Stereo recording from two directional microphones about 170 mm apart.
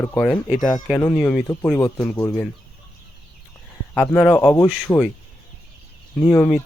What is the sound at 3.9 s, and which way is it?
Speech, 5° left (ahead or behind).